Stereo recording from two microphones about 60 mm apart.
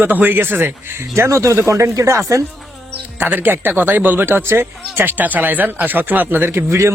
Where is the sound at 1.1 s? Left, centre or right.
Right.